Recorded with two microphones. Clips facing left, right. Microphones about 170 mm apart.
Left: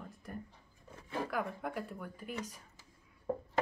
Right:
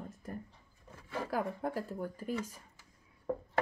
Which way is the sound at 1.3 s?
35° right (ahead or behind).